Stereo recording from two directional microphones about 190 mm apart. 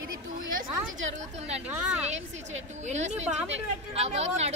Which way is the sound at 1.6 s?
5° right (ahead or behind).